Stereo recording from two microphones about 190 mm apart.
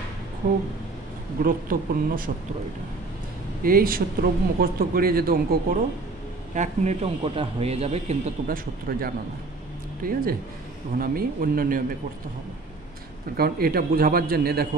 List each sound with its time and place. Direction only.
0.4 s a man's voice: 50° right (ahead or behind)
3.6 s a man's voice: 50° right (ahead or behind)
6.5 s a man's voice: 40° right (ahead or behind)
8.5 s a man's voice: 50° right (ahead or behind)
13.4 s a man's voice: 50° right (ahead or behind)